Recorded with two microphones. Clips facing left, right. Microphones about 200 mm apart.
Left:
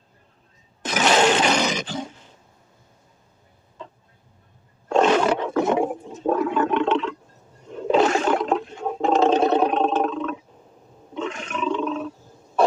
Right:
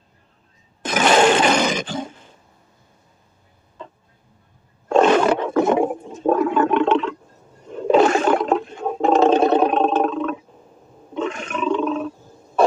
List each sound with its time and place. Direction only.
0.8 s roar: 50° right (ahead or behind)
4.9 s roar: 55° right (ahead or behind)
11.1 s a sound: 55° right (ahead or behind)